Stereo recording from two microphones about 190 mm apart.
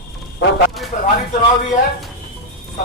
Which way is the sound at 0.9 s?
45° left (ahead or behind).